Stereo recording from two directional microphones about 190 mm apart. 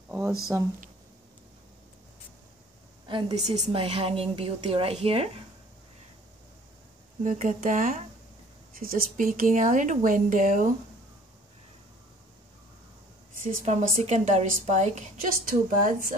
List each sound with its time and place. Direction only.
0.1 s speech: 10° right (ahead or behind)
3.1 s a woman's voice: 25° right (ahead or behind)
7.2 s speech: 45° right (ahead or behind)
13.7 s a woman's voice: 35° right (ahead or behind)